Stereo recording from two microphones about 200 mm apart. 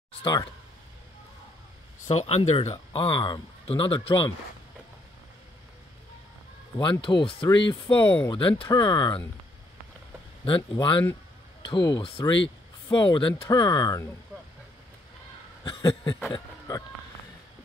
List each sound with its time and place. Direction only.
0.2 s speech: 20° left (ahead or behind)
2.0 s speech: 30° left (ahead or behind)
6.8 s speech: 25° left (ahead or behind)
10.4 s speech: 25° left (ahead or behind)
15.6 s a sound: 20° left (ahead or behind)